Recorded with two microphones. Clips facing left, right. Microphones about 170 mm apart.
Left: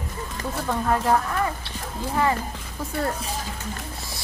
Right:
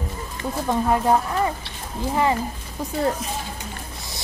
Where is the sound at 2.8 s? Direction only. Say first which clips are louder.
Right 4 dB; 15° right (ahead or behind).